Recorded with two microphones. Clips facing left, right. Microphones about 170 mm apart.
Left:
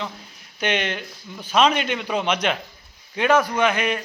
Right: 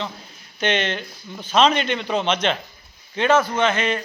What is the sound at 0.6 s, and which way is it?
A man's voice, 10° left (ahead or behind).